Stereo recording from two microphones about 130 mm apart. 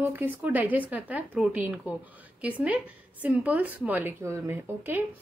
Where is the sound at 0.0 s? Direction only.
15° right (ahead or behind).